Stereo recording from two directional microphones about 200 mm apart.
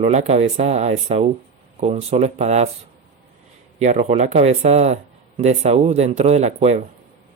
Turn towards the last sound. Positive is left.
turn(degrees=-35)  # may be behind; listen again after turning